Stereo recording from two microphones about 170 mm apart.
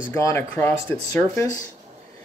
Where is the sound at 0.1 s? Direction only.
15° left (ahead or behind).